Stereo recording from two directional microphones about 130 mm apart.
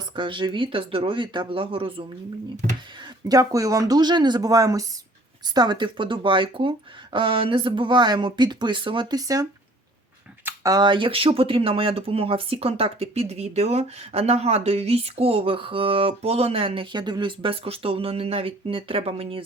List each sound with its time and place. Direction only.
0.2 s speech: 40° right (ahead or behind)
3.2 s speech: 25° right (ahead or behind); by 19.4 s 45° right (ahead or behind)